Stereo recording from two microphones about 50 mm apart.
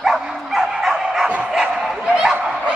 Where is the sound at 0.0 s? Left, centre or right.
Centre.